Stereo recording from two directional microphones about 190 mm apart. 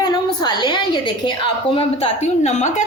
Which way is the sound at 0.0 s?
20° left (ahead or behind).